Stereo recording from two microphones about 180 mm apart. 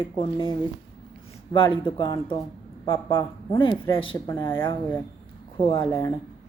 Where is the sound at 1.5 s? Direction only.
25° left (ahead or behind).